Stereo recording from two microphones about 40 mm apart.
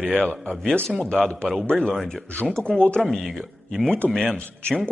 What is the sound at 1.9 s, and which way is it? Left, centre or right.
Speech, centre.